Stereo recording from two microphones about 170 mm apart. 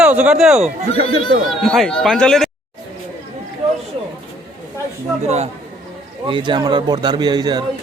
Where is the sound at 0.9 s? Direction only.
35° left (ahead or behind).